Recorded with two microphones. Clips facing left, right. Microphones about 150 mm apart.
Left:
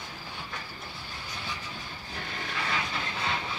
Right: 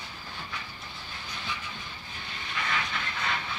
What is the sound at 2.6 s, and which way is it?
Train, 30° left (ahead or behind).